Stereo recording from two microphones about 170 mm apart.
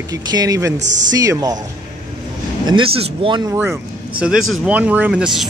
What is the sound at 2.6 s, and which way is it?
Speech, 30° right (ahead or behind).